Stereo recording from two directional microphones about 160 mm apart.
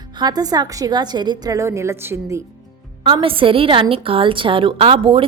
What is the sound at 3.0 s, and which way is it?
A woman's voice, 35° right (ahead or behind).